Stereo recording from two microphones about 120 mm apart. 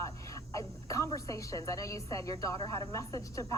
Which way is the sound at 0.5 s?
25° left (ahead or behind).